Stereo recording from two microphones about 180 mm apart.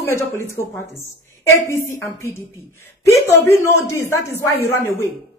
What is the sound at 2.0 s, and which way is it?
A man's voice, 15° left (ahead or behind).